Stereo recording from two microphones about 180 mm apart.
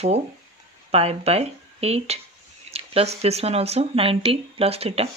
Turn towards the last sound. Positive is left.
turn(degrees=-35)  # may be behind; listen again after turning